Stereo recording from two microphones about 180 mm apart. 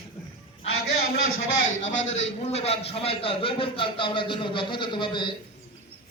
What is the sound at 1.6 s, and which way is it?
Speech, 90° left.